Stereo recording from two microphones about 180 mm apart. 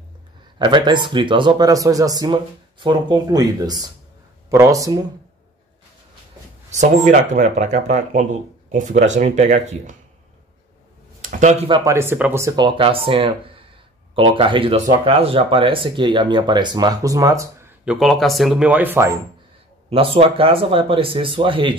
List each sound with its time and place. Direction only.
0.6 s speech: 25° right (ahead or behind)
6.7 s speech: 40° right (ahead or behind)
11.1 s a sound: 45° right (ahead or behind)
11.7 s speech: 15° right (ahead or behind)
17.8 s speech: centre (ahead or behind)
19.9 s speech: 30° right (ahead or behind)